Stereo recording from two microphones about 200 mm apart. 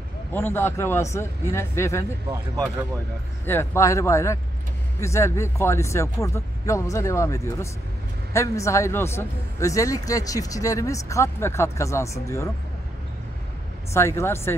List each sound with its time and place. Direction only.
0.3 s a man's voice: 10° left (ahead or behind)
2.2 s speech: 20° right (ahead or behind)
3.4 s a man's voice: 15° left (ahead or behind)
13.9 s a man's voice: 15° left (ahead or behind)